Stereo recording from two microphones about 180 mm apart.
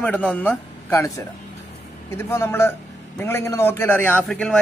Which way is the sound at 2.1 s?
15° left (ahead or behind).